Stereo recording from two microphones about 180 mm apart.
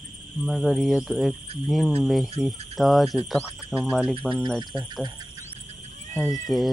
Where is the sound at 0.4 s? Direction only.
Centre (ahead or behind).